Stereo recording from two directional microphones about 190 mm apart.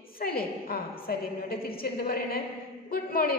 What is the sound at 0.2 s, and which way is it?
A woman's voice, 50° left (ahead or behind).